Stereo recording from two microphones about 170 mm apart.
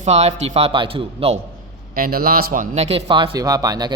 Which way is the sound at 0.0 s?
40° right (ahead or behind).